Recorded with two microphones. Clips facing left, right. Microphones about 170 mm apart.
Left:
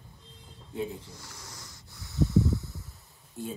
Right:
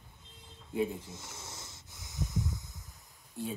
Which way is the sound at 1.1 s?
20° right (ahead or behind).